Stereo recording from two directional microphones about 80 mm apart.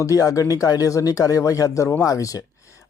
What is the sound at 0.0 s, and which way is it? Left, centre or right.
Speech, left.